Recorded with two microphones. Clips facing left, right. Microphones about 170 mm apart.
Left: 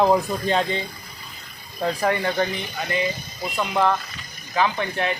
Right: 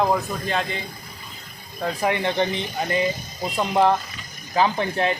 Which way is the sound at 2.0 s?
20° right (ahead or behind).